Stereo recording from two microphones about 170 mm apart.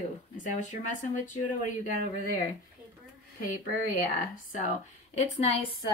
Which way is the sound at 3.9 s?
55° left (ahead or behind).